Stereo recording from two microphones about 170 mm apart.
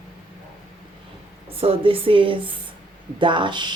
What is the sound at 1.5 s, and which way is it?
A woman's voice, 35° right (ahead or behind).